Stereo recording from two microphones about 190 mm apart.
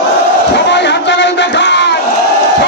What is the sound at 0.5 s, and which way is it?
Crowd, 65° left (ahead or behind).